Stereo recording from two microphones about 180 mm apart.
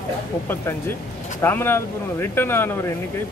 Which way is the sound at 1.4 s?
10° left (ahead or behind).